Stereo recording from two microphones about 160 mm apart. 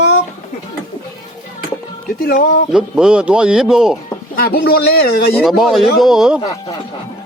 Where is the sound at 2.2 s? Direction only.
75° left (ahead or behind).